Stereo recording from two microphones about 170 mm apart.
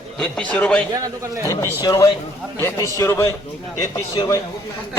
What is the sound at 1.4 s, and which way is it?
Speech, 15° left (ahead or behind).